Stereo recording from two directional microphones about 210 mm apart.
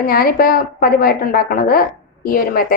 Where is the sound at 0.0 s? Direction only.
45° left (ahead or behind).